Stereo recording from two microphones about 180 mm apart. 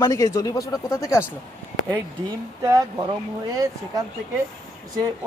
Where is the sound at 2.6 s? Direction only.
20° right (ahead or behind).